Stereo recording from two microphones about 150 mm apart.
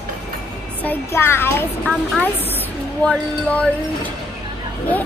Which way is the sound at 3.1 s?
5° left (ahead or behind).